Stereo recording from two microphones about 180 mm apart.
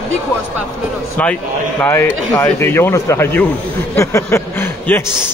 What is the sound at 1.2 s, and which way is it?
Speech, 10° left (ahead or behind).